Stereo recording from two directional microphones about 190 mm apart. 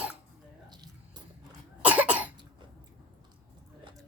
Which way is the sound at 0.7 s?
20° right (ahead or behind).